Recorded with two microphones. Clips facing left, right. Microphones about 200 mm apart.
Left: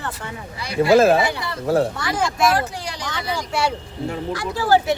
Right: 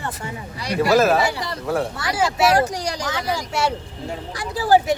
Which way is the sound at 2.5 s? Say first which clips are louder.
Right 4 dB; 40° right (ahead or behind).